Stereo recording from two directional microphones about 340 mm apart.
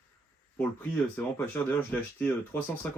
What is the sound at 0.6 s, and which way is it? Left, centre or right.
Speech, centre.